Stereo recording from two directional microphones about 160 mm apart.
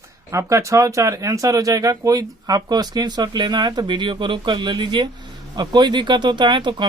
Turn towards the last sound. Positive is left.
turn(degrees=-30)  # may be behind; listen again after turning